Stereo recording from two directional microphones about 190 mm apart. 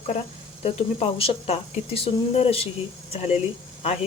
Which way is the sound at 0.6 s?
30° left (ahead or behind).